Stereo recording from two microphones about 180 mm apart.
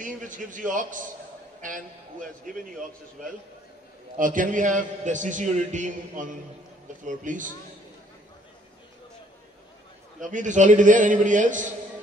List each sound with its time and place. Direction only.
0.0 s a man's voice: 45° right (ahead or behind)
4.2 s a man's voice: 50° right (ahead or behind)
10.2 s a man's voice: 45° right (ahead or behind)